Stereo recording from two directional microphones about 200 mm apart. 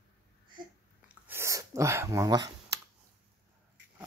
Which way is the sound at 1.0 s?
10° right (ahead or behind).